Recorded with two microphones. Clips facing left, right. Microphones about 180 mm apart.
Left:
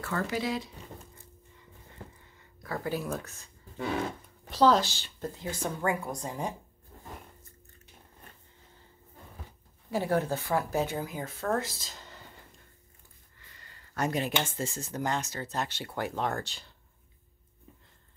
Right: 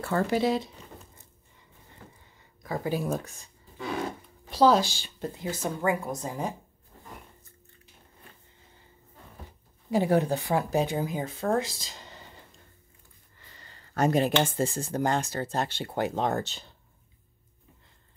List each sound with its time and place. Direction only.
0.0 s speech: 30° right (ahead or behind)
2.6 s speech: 15° right (ahead or behind)
4.5 s speech: 10° right (ahead or behind)
9.8 s speech: 15° right (ahead or behind)
13.9 s speech: 35° right (ahead or behind)